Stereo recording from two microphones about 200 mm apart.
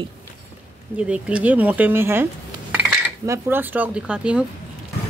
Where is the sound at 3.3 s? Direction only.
10° right (ahead or behind).